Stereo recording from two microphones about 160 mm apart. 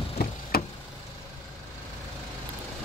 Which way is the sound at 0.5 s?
75° left (ahead or behind).